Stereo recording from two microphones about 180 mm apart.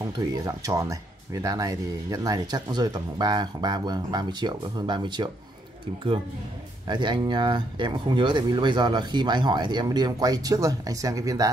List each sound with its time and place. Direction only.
0.0 s speech: 20° right (ahead or behind)
6.9 s speech: 25° right (ahead or behind)